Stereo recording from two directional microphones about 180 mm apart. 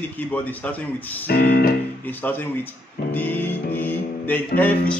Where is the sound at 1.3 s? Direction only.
60° left (ahead or behind).